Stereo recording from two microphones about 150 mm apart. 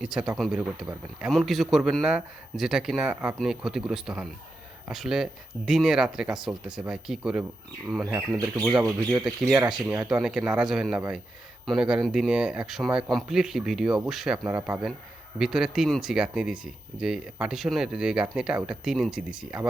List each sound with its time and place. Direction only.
0.0 s a man's voice: 5° right (ahead or behind)
8.3 s speech: 25° right (ahead or behind)
9.2 s a man's voice: 5° right (ahead or behind)